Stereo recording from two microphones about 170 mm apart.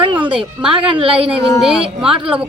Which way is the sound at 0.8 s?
30° right (ahead or behind).